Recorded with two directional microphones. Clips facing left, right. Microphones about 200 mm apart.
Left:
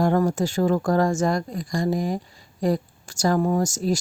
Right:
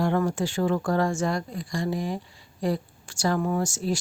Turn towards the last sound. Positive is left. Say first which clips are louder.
# left 4 dB
turn(degrees=40)  # may be behind; listen again after turning